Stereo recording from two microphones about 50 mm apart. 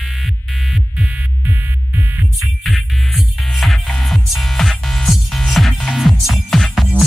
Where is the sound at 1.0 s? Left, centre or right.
Right.